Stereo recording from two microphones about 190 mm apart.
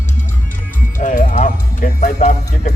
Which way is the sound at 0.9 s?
45° left (ahead or behind).